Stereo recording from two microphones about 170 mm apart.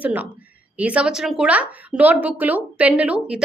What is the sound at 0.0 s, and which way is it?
A woman's voice, 10° right (ahead or behind).